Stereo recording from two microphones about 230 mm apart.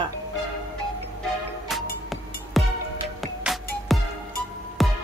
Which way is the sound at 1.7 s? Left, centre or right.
Centre.